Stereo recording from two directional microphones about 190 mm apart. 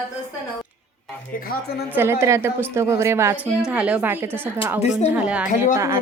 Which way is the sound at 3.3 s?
10° left (ahead or behind).